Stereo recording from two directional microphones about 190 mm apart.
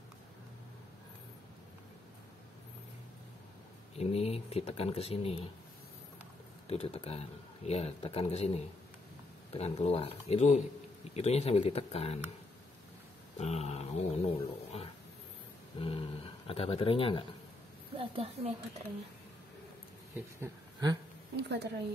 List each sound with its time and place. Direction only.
4.0 s a man's voice: 35° left (ahead or behind)
6.7 s a man's voice: 35° left (ahead or behind)
13.4 s a man's voice: 35° left (ahead or behind)
17.9 s a woman's voice: 30° right (ahead or behind)
20.3 s speech: 20° right (ahead or behind)
21.4 s speech: 65° right (ahead or behind)